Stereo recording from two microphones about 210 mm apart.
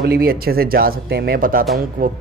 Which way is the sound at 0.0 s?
45° right (ahead or behind).